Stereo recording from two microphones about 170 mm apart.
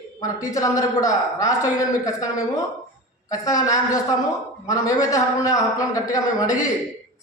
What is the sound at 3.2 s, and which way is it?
A man's voice, 20° left (ahead or behind).